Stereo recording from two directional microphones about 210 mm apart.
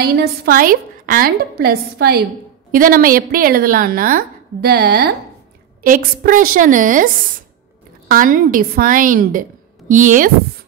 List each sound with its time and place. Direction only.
0.0 s a woman's voice: 45° right (ahead or behind)
8.1 s a woman's voice: 40° right (ahead or behind)